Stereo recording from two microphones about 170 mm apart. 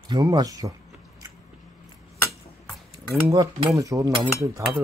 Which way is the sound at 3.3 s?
20° right (ahead or behind).